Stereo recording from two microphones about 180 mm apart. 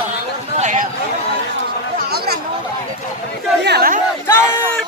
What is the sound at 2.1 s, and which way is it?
Chatter, 60° right (ahead or behind).